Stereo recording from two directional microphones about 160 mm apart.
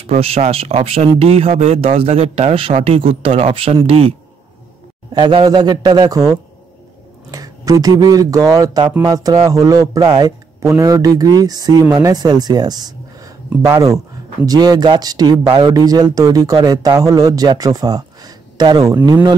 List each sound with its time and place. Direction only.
0.2 s speech: 40° right (ahead or behind)
5.1 s speech: 30° right (ahead or behind)
7.2 s speech: 20° right (ahead or behind)